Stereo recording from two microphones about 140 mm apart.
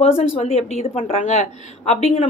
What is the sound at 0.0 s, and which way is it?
A woman's voice, 45° left (ahead or behind).